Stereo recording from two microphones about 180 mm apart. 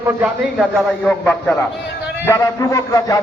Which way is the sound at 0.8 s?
5° left (ahead or behind).